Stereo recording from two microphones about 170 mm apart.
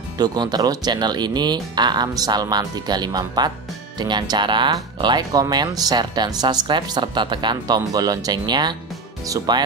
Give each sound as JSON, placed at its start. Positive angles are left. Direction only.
{"t": 0.2, "sound": "speech", "side_deg": -25}